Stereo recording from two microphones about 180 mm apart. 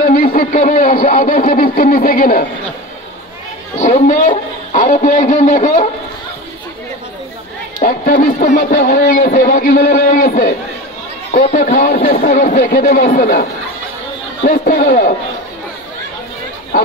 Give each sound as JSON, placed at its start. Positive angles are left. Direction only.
{"t": 0.0, "sound": "speech", "side_deg": 55}
{"t": 3.7, "sound": "speech", "side_deg": 45}
{"t": 7.8, "sound": "speech", "side_deg": 50}
{"t": 11.5, "sound": "speech", "side_deg": 50}
{"t": 16.7, "sound": "chatter", "side_deg": 50}